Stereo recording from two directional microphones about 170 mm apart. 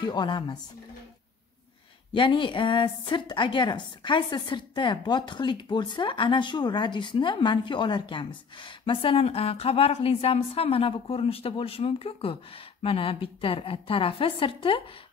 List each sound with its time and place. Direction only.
0.0 s a woman's voice: 25° left (ahead or behind)
2.1 s a woman's voice: 30° left (ahead or behind)